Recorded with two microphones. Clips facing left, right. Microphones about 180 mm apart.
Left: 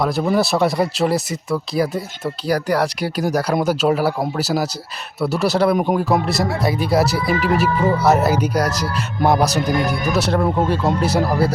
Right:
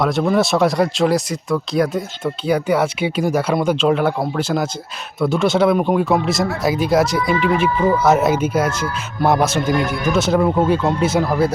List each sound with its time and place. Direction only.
0.0 s speech: 5° left (ahead or behind)
8.7 s music: 40° left (ahead or behind)
9.0 s speech: centre (ahead or behind)